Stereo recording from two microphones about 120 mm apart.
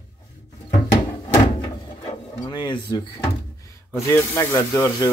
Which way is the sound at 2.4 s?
35° left (ahead or behind).